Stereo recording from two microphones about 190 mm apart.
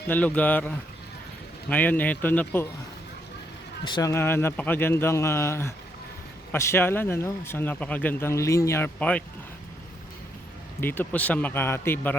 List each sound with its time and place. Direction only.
0.1 s speech: 10° left (ahead or behind)
3.8 s speech: 20° left (ahead or behind)
10.8 s speech: 10° left (ahead or behind)